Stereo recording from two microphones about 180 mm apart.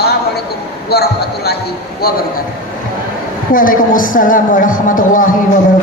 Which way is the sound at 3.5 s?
50° left (ahead or behind).